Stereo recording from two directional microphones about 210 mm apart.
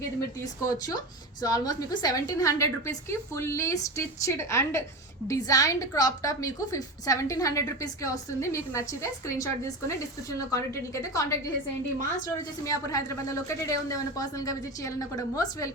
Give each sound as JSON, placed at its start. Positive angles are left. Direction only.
{"t": 0.6, "sound": "a woman's voice", "side_deg": 15}